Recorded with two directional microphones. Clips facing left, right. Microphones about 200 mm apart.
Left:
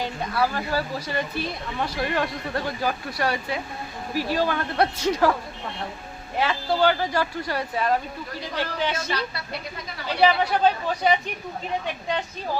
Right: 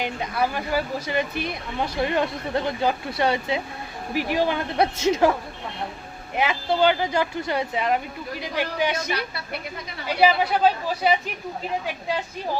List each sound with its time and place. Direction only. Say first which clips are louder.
0.0 s speech: even; 15° right (ahead or behind)
6.3 s speech: right 1 dB; 20° right (ahead or behind)